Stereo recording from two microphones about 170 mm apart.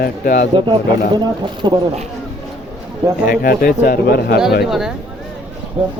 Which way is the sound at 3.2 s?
60° left (ahead or behind).